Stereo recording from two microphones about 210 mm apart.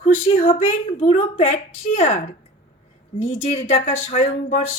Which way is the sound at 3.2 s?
30° left (ahead or behind).